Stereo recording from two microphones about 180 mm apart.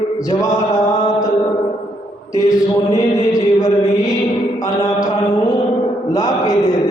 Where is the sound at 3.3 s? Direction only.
20° left (ahead or behind).